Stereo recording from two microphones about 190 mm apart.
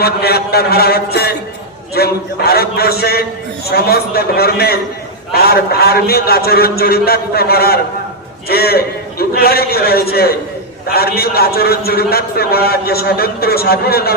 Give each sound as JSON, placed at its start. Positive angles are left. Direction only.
{"t": 0.0, "sound": "a man's voice", "side_deg": 55}